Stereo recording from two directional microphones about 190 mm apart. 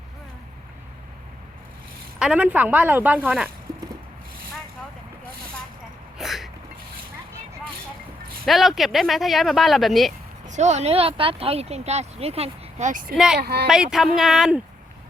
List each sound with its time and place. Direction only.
2.1 s a woman's voice: 5° right (ahead or behind)
6.1 s throat clearing: centre (ahead or behind)
8.4 s speech: centre (ahead or behind)
10.4 s speech: 40° right (ahead or behind)
13.1 s speech: 5° right (ahead or behind)
13.4 s speech: 55° right (ahead or behind)
13.7 s speech: centre (ahead or behind)